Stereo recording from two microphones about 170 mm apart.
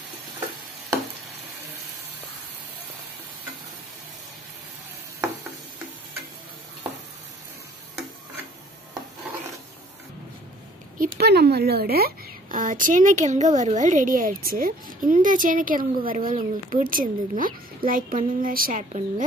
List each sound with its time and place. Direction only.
11.0 s a woman's voice: 70° right (ahead or behind); by 19.2 s 50° right (ahead or behind)